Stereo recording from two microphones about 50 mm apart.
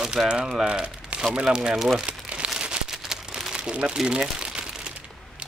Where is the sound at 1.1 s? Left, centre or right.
Right.